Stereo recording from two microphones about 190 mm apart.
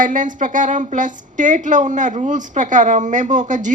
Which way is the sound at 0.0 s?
45° right (ahead or behind).